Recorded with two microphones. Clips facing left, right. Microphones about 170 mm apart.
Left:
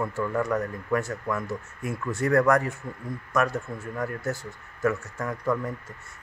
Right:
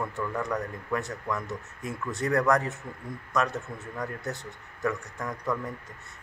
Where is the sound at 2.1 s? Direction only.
20° right (ahead or behind).